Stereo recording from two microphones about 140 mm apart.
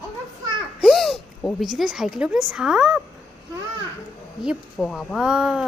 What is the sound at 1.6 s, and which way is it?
Speech, 5° right (ahead or behind).